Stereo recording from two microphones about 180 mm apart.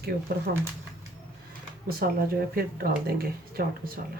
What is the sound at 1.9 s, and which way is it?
Speech, 55° right (ahead or behind).